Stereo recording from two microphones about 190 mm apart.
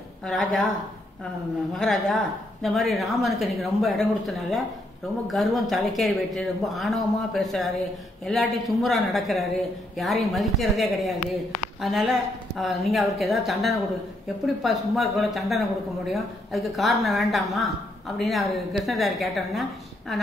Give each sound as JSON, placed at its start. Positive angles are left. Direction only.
{"t": 0.2, "sound": "a woman's voice", "side_deg": 5}
{"t": 1.8, "sound": "a woman's voice", "side_deg": 0}